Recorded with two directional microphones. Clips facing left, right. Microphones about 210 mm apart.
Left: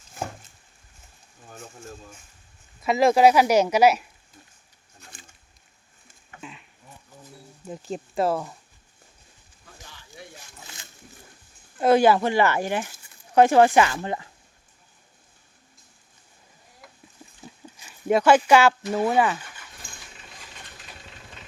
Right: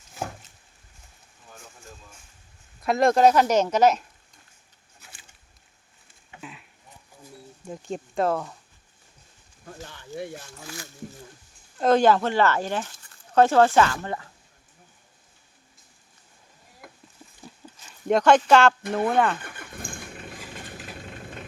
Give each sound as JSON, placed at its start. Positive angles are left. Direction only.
{"t": 0.2, "sound": "a sound", "side_deg": 50}
{"t": 2.8, "sound": "speech", "side_deg": 5}
{"t": 4.9, "sound": "patter", "side_deg": -5}
{"t": 6.4, "sound": "a sound", "side_deg": -5}
{"t": 7.6, "sound": "speech", "side_deg": 0}
{"t": 9.6, "sound": "speech", "side_deg": -55}
{"t": 11.8, "sound": "speech", "side_deg": 10}
{"t": 16.8, "sound": "a sound", "side_deg": -55}
{"t": 17.4, "sound": "livestock", "side_deg": 10}
{"t": 18.9, "sound": "speech", "side_deg": 5}
{"t": 19.4, "sound": "vehicle", "side_deg": -55}